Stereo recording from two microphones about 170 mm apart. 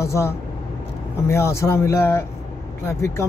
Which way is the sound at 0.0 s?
15° left (ahead or behind).